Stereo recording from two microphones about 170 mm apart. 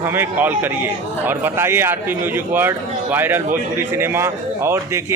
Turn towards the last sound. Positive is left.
turn(degrees=-15)  # may be behind; listen again after turning